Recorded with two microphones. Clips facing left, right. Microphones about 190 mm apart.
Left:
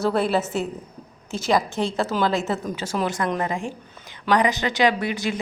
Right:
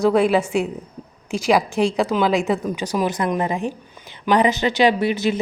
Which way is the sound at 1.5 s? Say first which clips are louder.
Right 4 dB; centre (ahead or behind).